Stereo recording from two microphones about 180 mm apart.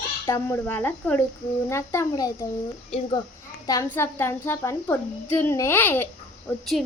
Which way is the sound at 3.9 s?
15° left (ahead or behind).